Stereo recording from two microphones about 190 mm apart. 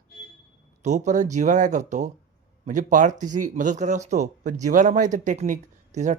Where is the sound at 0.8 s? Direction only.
40° right (ahead or behind).